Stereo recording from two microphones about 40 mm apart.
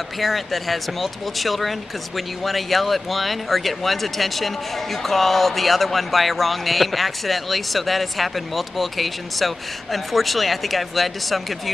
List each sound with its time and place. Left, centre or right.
0.2 s speech: centre